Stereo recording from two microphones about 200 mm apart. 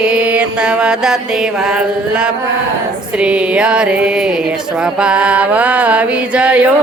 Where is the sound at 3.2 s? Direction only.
5° right (ahead or behind).